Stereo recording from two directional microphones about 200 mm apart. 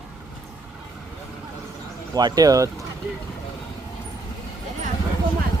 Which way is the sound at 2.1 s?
20° right (ahead or behind).